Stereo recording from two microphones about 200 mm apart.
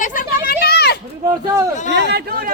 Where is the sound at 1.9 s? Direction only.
55° right (ahead or behind).